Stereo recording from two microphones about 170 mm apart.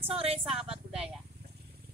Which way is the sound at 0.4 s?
5° right (ahead or behind).